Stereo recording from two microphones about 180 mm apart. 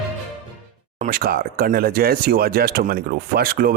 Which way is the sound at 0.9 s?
50° right (ahead or behind).